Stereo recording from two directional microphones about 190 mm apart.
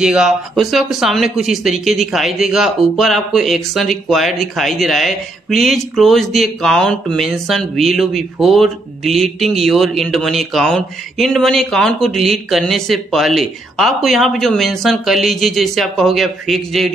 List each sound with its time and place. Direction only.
0.0 s speech: 5° right (ahead or behind)